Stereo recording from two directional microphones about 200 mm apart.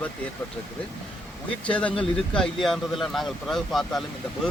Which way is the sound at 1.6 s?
5° left (ahead or behind).